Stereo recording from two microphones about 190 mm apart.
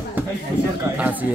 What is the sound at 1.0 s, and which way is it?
Speech, 10° right (ahead or behind).